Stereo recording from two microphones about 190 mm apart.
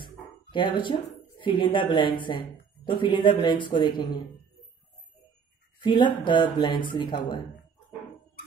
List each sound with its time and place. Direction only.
0.0 s speech: 25° left (ahead or behind)
5.9 s speech: 25° left (ahead or behind)